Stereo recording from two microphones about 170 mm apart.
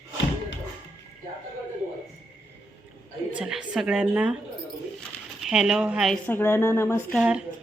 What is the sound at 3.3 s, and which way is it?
A woman's voice, 5° right (ahead or behind).